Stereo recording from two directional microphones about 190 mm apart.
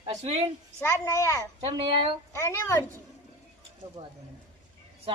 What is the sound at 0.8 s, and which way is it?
Speech, 10° left (ahead or behind).